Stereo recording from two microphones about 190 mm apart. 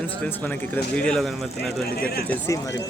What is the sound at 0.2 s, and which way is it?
Speech, 10° left (ahead or behind).